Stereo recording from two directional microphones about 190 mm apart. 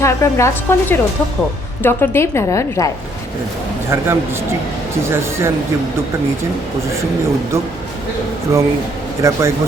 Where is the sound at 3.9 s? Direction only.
15° right (ahead or behind).